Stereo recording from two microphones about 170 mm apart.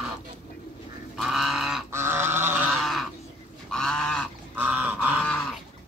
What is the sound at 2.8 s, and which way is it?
Bird, centre (ahead or behind).